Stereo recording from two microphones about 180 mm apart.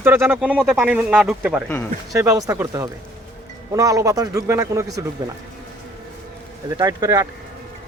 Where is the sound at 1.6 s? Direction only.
10° left (ahead or behind).